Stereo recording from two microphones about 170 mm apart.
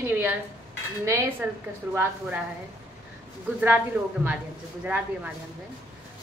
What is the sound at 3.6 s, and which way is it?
Speech, 10° right (ahead or behind).